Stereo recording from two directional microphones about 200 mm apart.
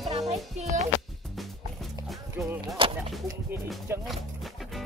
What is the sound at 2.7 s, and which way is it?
Speech, 30° right (ahead or behind).